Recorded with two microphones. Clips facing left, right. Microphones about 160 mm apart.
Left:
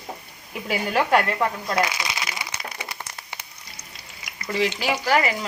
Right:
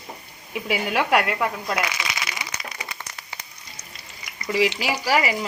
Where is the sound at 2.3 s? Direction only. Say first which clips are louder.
Left 1 dB; 25° left (ahead or behind).